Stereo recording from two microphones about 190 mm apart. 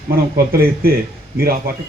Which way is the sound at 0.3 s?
50° right (ahead or behind).